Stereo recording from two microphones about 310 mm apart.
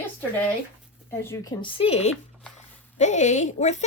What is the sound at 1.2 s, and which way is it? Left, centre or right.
Speech, centre.